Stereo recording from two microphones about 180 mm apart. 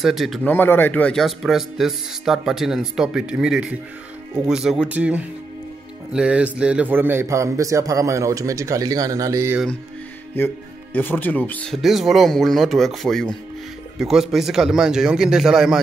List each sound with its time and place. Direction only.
0.0 s a man's voice: centre (ahead or behind)
0.5 s a man's voice: 10° left (ahead or behind); by 9.6 s 15° right (ahead or behind)
10.3 s a man's voice: 10° left (ahead or behind)